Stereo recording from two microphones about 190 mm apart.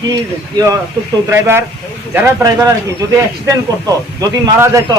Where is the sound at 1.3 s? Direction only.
15° right (ahead or behind).